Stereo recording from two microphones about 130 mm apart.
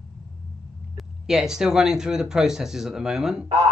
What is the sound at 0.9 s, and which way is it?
Speech, 5° right (ahead or behind).